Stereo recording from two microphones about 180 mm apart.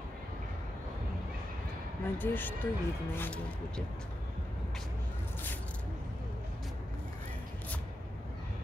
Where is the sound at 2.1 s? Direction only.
10° left (ahead or behind).